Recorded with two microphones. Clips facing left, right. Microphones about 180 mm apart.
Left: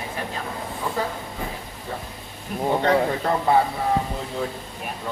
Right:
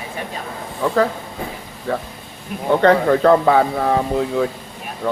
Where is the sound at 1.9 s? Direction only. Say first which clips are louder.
Right 10 dB; 75° right (ahead or behind).